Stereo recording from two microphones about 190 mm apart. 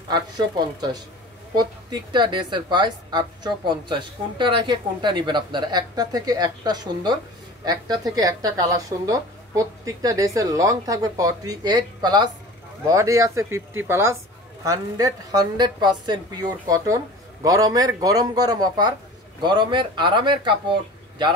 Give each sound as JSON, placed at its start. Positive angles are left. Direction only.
{"t": 1.5, "sound": "speech", "side_deg": -20}